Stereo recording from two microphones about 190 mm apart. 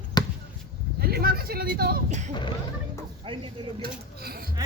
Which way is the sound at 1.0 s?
55° right (ahead or behind).